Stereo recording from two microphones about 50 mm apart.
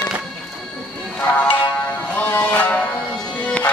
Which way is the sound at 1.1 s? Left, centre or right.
Left.